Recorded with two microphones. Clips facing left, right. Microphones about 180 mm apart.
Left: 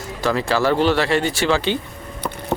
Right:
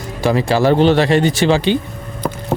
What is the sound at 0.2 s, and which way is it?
Speech, 15° right (ahead or behind).